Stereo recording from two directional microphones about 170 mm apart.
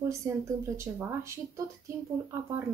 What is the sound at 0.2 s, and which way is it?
Speech, 15° right (ahead or behind).